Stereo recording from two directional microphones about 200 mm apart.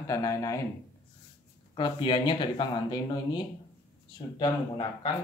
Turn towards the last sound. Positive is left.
turn(degrees=20)  # may be behind; listen again after turning